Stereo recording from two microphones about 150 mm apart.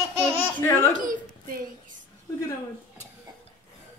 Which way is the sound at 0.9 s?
65° right (ahead or behind).